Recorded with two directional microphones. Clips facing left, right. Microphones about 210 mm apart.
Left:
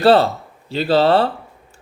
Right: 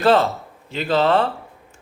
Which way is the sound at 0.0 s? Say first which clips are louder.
Left 3 dB; 35° left (ahead or behind).